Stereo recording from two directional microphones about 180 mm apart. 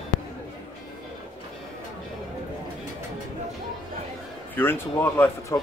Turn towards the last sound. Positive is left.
turn(degrees=15)  # may be behind; listen again after turning